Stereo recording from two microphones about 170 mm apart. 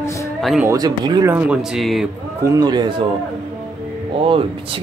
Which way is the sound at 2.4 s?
25° right (ahead or behind).